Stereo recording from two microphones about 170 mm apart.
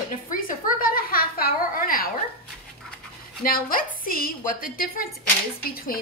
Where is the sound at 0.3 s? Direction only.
55° left (ahead or behind).